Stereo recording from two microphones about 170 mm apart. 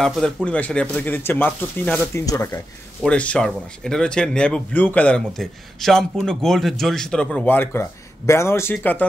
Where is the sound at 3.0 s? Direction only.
5° left (ahead or behind).